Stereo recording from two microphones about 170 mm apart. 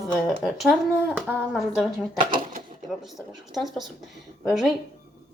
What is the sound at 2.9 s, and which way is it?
Speech, centre (ahead or behind).